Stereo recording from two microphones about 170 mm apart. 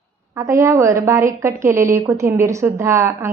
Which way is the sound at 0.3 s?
15° right (ahead or behind).